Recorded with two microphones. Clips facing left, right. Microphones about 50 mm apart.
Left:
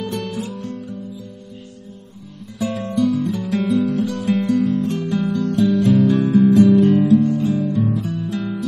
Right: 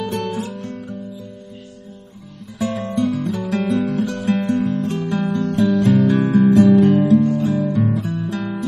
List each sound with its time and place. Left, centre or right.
0.0 s guitar: right
2.9 s guitar: right
6.0 s music: right
7.2 s guitar: right